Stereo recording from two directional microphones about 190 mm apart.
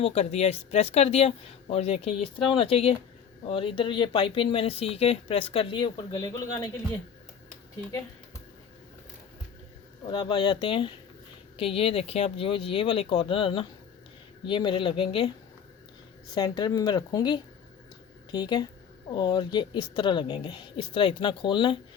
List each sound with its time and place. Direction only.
0.0 s speech: 35° left (ahead or behind)
10.1 s speech: 25° left (ahead or behind)
16.3 s speech: 20° left (ahead or behind)